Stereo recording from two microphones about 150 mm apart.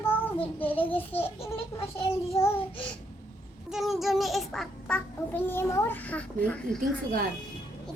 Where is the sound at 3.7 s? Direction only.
Centre (ahead or behind).